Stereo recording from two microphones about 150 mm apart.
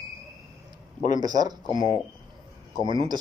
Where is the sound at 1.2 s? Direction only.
25° right (ahead or behind).